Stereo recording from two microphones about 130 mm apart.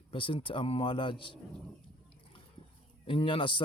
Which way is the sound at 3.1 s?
40° left (ahead or behind).